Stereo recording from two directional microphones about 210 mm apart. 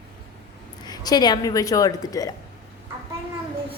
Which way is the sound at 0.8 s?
20° left (ahead or behind).